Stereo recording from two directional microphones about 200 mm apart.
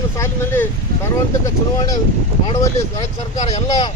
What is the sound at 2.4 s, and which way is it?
Speech, 25° left (ahead or behind).